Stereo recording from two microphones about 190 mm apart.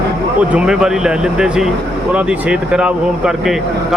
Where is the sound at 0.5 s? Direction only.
5° right (ahead or behind).